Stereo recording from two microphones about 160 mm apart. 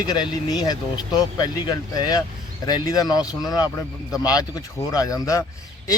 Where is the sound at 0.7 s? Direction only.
25° left (ahead or behind).